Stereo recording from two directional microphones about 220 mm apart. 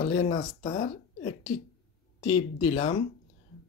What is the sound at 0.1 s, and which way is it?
Speech, 25° left (ahead or behind).